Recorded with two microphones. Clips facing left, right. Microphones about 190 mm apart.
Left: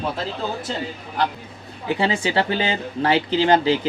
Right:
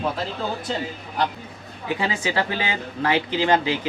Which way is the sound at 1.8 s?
30° left (ahead or behind).